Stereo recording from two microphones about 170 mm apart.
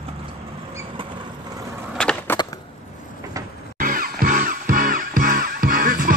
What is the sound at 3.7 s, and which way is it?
Music, 55° right (ahead or behind).